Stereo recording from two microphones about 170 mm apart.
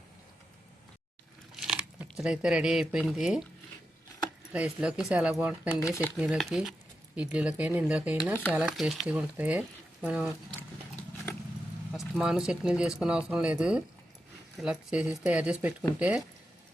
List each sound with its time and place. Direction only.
1.5 s speech: 5° right (ahead or behind)
4.5 s speech: 5° right (ahead or behind)
5.8 s speech: 15° left (ahead or behind)
6.1 s speech: centre (ahead or behind)
11.9 s speech: 5° right (ahead or behind)